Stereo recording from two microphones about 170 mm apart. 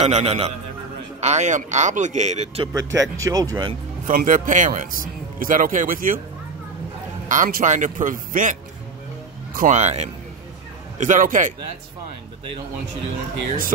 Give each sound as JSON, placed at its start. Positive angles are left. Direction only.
{"t": 0.0, "sound": "a man's voice", "side_deg": -35}
{"t": 2.9, "sound": "speech", "side_deg": -20}
{"t": 4.1, "sound": "speech", "side_deg": -50}
{"t": 7.2, "sound": "speech", "side_deg": -50}
{"t": 9.6, "sound": "speech", "side_deg": -45}